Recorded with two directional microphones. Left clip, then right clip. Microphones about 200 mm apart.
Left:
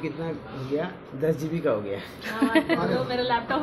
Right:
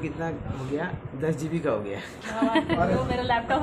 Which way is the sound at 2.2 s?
5° left (ahead or behind).